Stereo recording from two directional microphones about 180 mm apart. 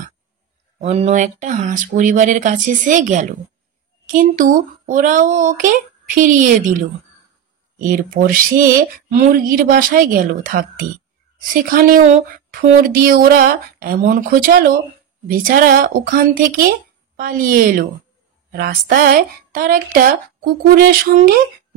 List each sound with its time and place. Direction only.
0.9 s speech: 40° right (ahead or behind)
4.0 s a sound: 50° right (ahead or behind)
4.4 s speech: 50° right (ahead or behind)
7.8 s speech: 55° right (ahead or behind)